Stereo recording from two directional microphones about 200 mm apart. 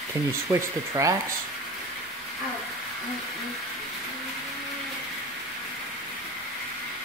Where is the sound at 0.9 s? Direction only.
15° right (ahead or behind).